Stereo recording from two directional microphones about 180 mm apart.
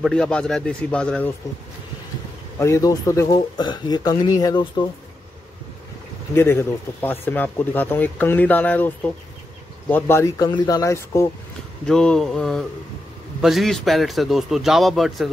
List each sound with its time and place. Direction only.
0.0 s a man's voice: 5° left (ahead or behind)
2.6 s a man's voice: 20° left (ahead or behind)
6.3 s speech: 15° left (ahead or behind)
11.8 s a man's voice: 5° left (ahead or behind)